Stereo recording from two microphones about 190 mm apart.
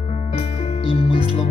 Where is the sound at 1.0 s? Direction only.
30° left (ahead or behind).